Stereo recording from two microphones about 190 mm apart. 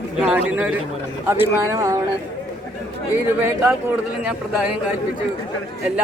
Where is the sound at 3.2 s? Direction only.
10° right (ahead or behind).